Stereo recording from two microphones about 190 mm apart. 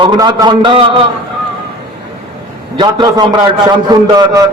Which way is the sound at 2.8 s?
25° right (ahead or behind).